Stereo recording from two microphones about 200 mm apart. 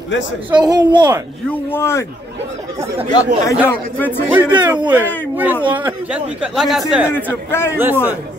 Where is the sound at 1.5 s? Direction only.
10° left (ahead or behind).